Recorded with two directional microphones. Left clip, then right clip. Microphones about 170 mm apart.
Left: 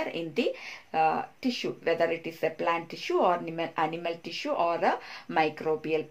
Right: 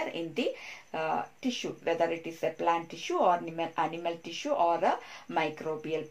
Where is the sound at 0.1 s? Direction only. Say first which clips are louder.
Left 3 dB; 30° left (ahead or behind).